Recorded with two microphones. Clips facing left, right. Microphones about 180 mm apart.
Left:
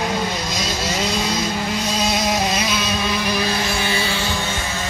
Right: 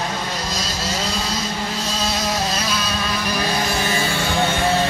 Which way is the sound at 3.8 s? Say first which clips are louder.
Right 1 dB; 45° right (ahead or behind).